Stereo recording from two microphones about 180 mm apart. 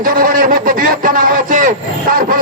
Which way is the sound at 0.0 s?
50° right (ahead or behind).